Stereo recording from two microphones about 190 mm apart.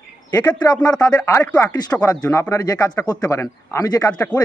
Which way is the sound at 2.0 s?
20° left (ahead or behind).